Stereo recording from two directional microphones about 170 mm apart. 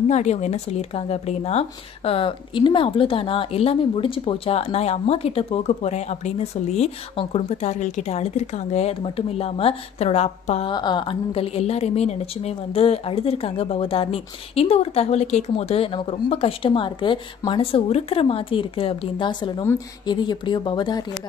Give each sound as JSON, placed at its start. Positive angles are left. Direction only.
{"t": 0.1, "sound": "speech", "side_deg": 40}
{"t": 10.7, "sound": "speech", "side_deg": 25}